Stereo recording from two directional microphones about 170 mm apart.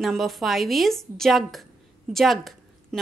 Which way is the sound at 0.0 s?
Centre (ahead or behind).